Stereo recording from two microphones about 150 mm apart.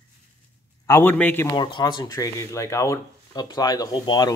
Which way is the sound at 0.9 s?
15° left (ahead or behind).